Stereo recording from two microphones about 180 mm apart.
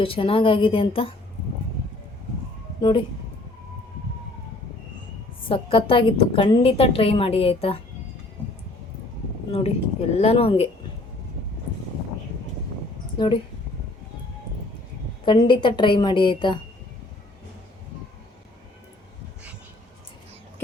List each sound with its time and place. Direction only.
0.0 s a woman's voice: 30° left (ahead or behind)
5.5 s a woman's voice: 30° left (ahead or behind)
9.5 s a woman's voice: 35° left (ahead or behind)
13.1 s speech: 25° left (ahead or behind)
15.2 s a woman's voice: 25° left (ahead or behind)